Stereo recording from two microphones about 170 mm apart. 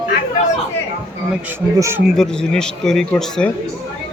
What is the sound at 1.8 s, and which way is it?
Speech, 15° right (ahead or behind).